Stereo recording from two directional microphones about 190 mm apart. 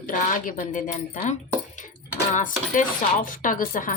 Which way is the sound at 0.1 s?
45° left (ahead or behind).